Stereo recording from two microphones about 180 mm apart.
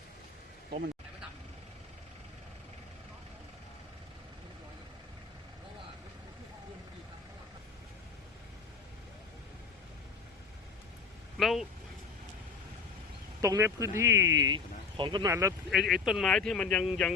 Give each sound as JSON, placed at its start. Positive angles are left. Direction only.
{"t": 11.3, "sound": "vehicle", "side_deg": 0}
{"t": 13.4, "sound": "speech", "side_deg": -15}
{"t": 15.3, "sound": "speech", "side_deg": -15}
{"t": 15.7, "sound": "speech", "side_deg": 0}